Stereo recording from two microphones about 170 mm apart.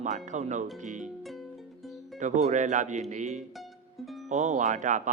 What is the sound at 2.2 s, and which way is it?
Speech, 45° right (ahead or behind).